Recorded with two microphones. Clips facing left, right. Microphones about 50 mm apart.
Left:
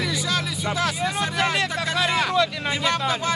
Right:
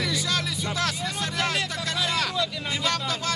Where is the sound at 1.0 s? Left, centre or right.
Left.